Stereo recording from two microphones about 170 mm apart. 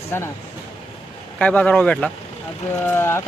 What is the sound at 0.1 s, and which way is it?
Speech, 10° left (ahead or behind).